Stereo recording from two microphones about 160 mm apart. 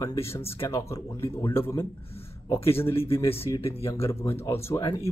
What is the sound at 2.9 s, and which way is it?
Speech, 35° left (ahead or behind).